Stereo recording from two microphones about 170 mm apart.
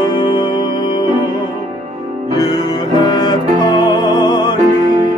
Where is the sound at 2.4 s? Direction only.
25° left (ahead or behind).